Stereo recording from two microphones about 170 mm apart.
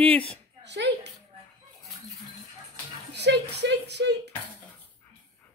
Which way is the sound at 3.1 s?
80° right.